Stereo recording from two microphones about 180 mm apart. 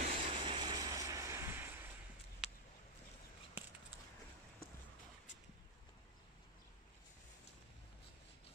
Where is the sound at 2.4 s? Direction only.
5° right (ahead or behind).